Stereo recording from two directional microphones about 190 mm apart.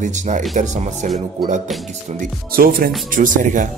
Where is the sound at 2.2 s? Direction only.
50° right (ahead or behind).